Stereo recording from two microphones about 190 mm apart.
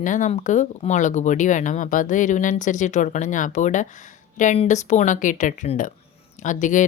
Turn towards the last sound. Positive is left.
turn(degrees=40)  # may be behind; listen again after turning